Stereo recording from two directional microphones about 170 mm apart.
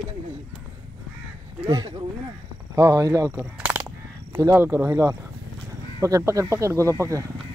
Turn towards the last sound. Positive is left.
turn(degrees=-20)  # may be behind; listen again after turning